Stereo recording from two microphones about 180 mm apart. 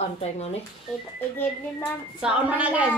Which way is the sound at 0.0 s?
35° left (ahead or behind).